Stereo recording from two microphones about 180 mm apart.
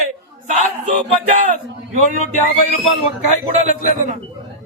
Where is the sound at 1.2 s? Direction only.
45° right (ahead or behind).